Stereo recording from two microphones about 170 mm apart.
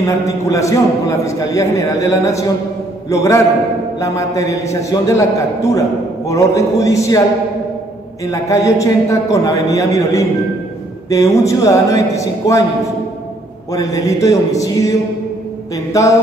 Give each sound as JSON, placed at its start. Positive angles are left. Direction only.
{"t": 0.0, "sound": "a man's voice", "side_deg": 20}
{"t": 8.3, "sound": "a man's voice", "side_deg": 20}
{"t": 13.7, "sound": "a man's voice", "side_deg": 20}